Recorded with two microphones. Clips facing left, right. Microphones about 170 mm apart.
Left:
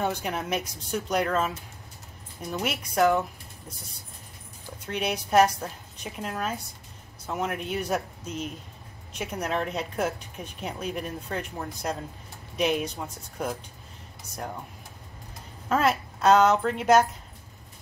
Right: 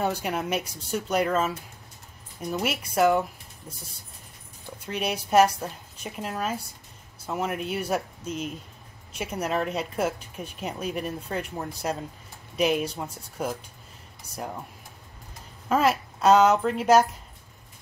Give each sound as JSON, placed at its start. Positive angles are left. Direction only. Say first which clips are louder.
{"t": 0.0, "sound": "a woman's voice", "louder": "right 2 dB", "side_deg": -5}
{"t": 2.5, "sound": "speech", "louder": "right 1 dB", "side_deg": -5}
{"t": 4.8, "sound": "a woman's voice", "louder": "even", "side_deg": -5}
{"t": 15.7, "sound": "a woman's voice", "louder": "right 1 dB", "side_deg": -5}